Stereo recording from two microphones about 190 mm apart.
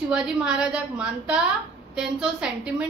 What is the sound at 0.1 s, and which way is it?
A woman's voice, 5° right (ahead or behind).